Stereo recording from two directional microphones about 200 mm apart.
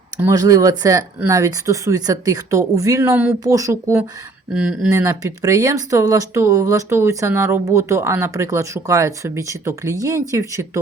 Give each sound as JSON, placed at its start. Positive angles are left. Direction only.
{"t": 0.2, "sound": "speech", "side_deg": -15}
{"t": 4.9, "sound": "speech", "side_deg": -15}